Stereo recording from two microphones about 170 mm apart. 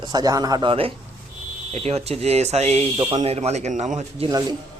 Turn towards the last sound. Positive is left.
turn(degrees=-35)  # may be behind; listen again after turning